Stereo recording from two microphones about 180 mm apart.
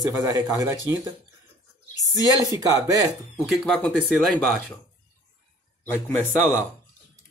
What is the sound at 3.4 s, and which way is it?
Speech, 5° right (ahead or behind).